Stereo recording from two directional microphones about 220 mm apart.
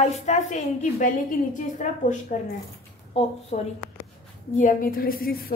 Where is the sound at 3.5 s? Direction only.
35° left (ahead or behind).